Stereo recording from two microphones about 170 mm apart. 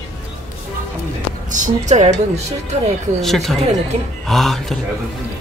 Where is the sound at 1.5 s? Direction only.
45° right (ahead or behind).